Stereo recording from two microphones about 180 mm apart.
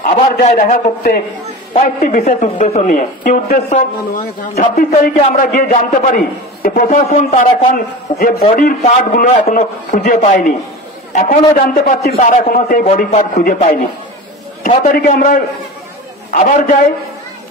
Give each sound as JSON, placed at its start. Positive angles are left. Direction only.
{"t": 0.2, "sound": "a man's voice", "side_deg": 40}
{"t": 6.9, "sound": "a man's voice", "side_deg": 35}